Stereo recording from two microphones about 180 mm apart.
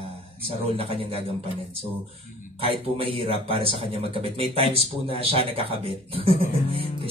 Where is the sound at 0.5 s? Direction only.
30° right (ahead or behind).